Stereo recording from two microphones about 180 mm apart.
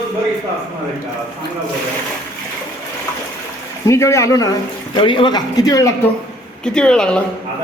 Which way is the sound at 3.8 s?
15° left (ahead or behind).